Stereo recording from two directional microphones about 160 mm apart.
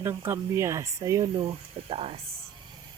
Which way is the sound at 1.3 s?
35° right (ahead or behind).